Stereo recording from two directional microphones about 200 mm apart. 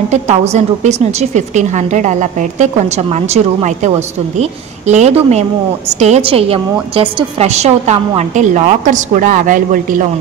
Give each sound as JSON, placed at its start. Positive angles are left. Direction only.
{"t": 0.1, "sound": "a woman's voice", "side_deg": -35}